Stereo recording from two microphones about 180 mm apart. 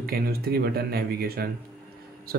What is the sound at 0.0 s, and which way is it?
Speech, 60° right (ahead or behind).